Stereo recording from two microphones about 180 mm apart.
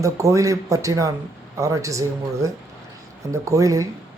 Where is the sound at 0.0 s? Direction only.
15° right (ahead or behind).